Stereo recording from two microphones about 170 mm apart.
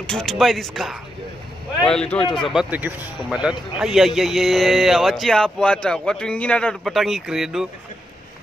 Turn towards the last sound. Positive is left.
turn(degrees=0)  # may be behind; listen again after turning